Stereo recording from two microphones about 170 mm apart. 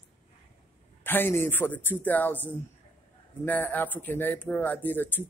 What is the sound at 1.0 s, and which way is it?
Speech, 10° left (ahead or behind).